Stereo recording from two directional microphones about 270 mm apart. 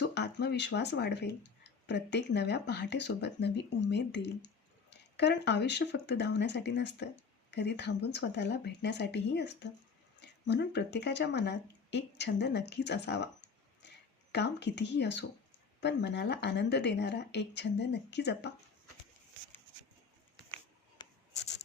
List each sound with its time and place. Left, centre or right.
0.1 s speech: left